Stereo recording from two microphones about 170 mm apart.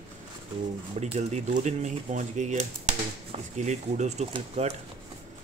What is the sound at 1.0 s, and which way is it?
Speech, 40° right (ahead or behind).